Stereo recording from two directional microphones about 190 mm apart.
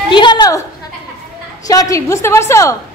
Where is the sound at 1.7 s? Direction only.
20° left (ahead or behind).